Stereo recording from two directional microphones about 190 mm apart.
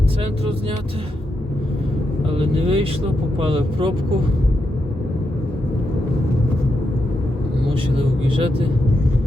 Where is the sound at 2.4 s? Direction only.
30° right (ahead or behind).